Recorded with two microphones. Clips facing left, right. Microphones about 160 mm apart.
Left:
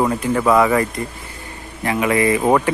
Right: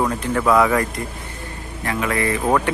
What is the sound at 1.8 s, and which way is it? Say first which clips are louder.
Speech: left 5 dB; 15° left (ahead or behind).